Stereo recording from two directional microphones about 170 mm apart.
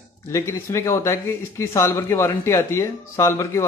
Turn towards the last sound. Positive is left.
turn(degrees=15)  # may be behind; listen again after turning